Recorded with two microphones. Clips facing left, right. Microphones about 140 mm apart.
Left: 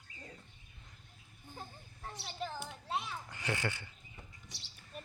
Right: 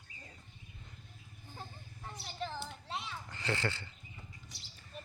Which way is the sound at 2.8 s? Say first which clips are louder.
Left 3 dB; 15° left (ahead or behind).